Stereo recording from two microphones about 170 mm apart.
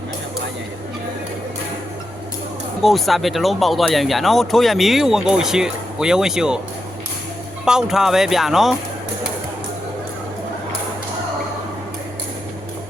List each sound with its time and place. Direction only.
2.8 s speech: centre (ahead or behind)
7.6 s speech: 5° right (ahead or behind)